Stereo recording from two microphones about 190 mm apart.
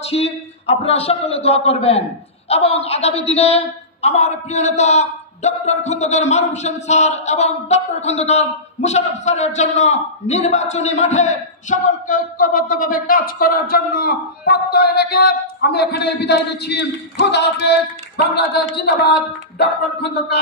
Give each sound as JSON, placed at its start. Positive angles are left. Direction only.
{"t": 0.1, "sound": "a man's voice", "side_deg": 30}
{"t": 19.6, "sound": "music", "side_deg": 60}